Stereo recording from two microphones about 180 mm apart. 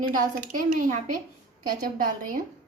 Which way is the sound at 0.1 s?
45° right (ahead or behind).